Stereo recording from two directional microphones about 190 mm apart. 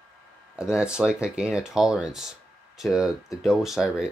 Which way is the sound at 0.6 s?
5° right (ahead or behind).